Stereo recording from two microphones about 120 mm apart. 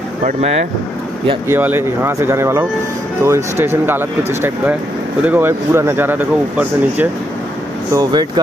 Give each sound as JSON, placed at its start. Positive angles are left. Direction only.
{"t": 1.5, "sound": "speech", "side_deg": -20}
{"t": 5.2, "sound": "speech", "side_deg": -15}
{"t": 7.9, "sound": "speech", "side_deg": -35}